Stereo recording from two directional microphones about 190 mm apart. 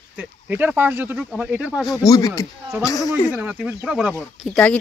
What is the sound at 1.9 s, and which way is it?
Speech, 20° left (ahead or behind).